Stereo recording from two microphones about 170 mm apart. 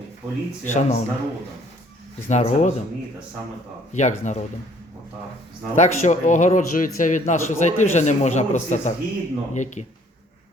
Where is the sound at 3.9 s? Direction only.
45° left (ahead or behind).